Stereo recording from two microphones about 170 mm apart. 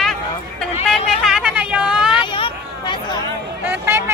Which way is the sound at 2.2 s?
30° left (ahead or behind).